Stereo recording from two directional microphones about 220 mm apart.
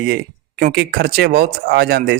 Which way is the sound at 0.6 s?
45° right (ahead or behind).